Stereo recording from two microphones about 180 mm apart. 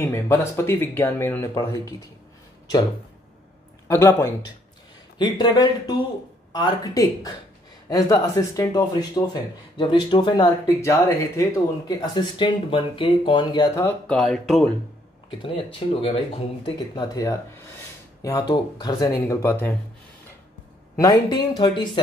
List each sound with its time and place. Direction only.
0.0 s speech: 15° left (ahead or behind)
3.8 s speech: 15° left (ahead or behind)
5.2 s speech: 25° left (ahead or behind)
13.8 s speech: 5° left (ahead or behind)
15.4 s speech: 30° left (ahead or behind); by 19.7 s 10° left (ahead or behind)
21.0 s speech: 20° left (ahead or behind)